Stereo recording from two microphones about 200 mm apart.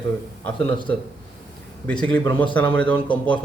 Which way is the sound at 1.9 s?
5° left (ahead or behind).